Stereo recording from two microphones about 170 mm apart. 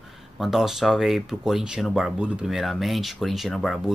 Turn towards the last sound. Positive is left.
turn(degrees=0)  # may be behind; listen again after turning